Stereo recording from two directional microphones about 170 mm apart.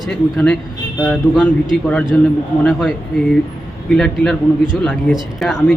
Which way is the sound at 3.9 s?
5° left (ahead or behind).